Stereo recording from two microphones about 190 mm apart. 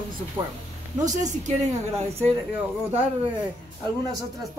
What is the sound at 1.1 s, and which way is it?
Speech, 40° right (ahead or behind).